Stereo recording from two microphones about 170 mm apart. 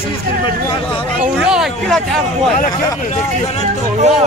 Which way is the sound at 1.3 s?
5° right (ahead or behind).